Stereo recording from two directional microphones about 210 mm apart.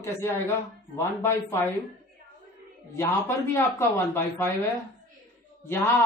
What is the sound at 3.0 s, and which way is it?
A woman's voice, 10° left (ahead or behind).